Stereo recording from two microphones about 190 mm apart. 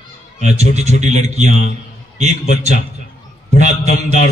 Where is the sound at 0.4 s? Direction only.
35° right (ahead or behind).